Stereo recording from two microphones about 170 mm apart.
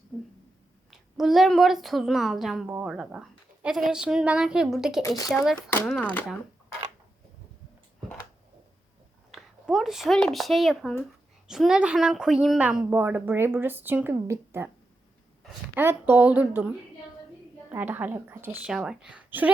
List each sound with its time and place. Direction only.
0.9 s speech: centre (ahead or behind)
9.3 s a woman's voice: centre (ahead or behind)
15.7 s a woman's voice: 10° right (ahead or behind)